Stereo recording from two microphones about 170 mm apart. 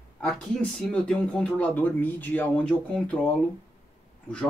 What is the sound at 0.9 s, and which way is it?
Speech, 5° left (ahead or behind).